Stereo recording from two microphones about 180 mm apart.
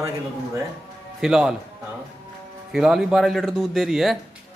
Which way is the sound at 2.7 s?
5° right (ahead or behind).